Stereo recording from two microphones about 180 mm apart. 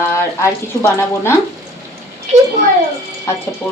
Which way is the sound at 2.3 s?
40° right (ahead or behind).